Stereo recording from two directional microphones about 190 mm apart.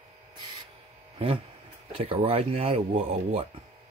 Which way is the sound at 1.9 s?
30° right (ahead or behind).